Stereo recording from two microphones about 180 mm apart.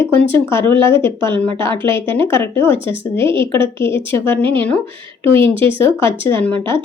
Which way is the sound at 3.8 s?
15° left (ahead or behind).